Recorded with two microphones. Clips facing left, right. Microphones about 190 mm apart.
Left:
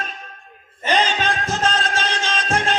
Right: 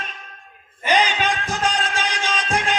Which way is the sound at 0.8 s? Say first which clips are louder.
Even; 15° right (ahead or behind).